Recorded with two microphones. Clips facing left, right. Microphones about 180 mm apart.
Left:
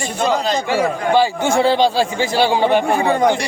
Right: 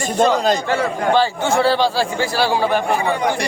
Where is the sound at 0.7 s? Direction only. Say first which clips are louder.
Left 1 dB; 15° left (ahead or behind).